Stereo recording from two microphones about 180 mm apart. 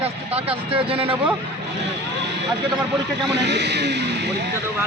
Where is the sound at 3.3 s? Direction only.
70° right (ahead or behind).